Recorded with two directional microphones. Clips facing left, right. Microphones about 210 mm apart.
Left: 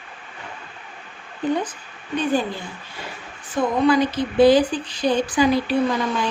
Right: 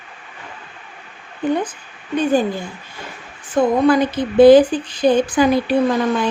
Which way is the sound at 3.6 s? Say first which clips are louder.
Right 4 dB; 50° right (ahead or behind).